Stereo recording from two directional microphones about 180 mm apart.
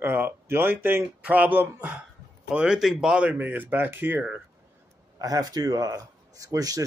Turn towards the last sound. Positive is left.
turn(degrees=-20)  # may be behind; listen again after turning